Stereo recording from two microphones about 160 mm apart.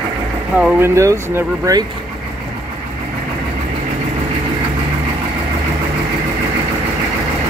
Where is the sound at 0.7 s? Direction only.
15° right (ahead or behind).